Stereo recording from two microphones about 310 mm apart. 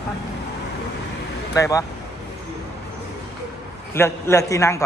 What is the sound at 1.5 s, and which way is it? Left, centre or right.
Speech, centre.